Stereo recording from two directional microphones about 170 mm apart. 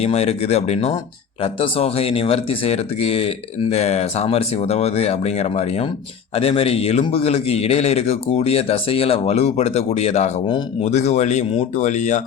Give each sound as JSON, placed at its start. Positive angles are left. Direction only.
{"t": 0.0, "sound": "speech", "side_deg": 40}
{"t": 10.4, "sound": "speech", "side_deg": 30}
{"t": 10.8, "sound": "speech", "side_deg": 45}